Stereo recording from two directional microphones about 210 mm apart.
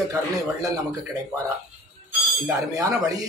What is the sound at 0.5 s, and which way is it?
Speech, 15° right (ahead or behind).